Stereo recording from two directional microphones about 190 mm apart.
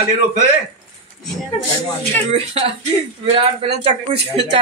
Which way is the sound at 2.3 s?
30° right (ahead or behind).